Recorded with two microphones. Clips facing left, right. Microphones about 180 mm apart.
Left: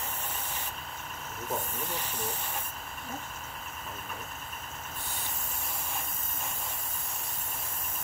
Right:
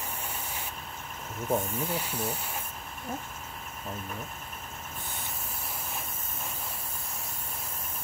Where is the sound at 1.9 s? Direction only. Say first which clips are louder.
Right 4 dB; 10° right (ahead or behind).